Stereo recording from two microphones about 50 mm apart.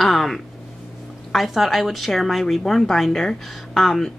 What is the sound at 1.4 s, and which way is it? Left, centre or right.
A woman's voice, centre.